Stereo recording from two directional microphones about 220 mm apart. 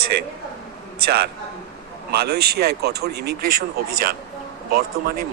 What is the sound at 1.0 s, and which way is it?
Speech, 45° right (ahead or behind).